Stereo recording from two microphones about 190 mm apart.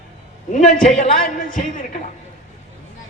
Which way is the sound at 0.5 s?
40° left (ahead or behind).